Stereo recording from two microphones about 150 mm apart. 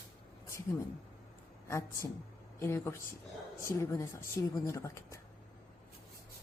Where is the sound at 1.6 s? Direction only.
20° left (ahead or behind).